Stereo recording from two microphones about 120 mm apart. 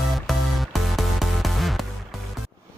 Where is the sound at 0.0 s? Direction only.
Centre (ahead or behind).